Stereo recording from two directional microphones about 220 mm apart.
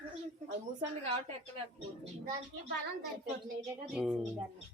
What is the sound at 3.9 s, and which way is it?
Speech, centre (ahead or behind).